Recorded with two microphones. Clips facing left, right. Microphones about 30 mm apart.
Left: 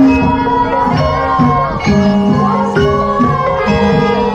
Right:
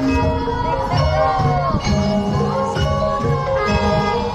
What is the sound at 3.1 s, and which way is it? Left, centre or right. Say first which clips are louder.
Music: left 7 dB; left.